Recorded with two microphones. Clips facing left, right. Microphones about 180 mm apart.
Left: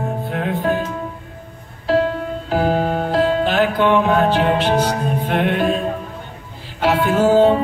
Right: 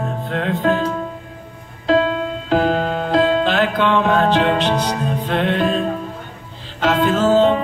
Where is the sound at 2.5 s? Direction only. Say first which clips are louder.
Even; 15° left (ahead or behind).